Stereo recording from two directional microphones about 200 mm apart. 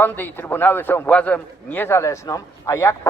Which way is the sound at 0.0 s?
10° left (ahead or behind).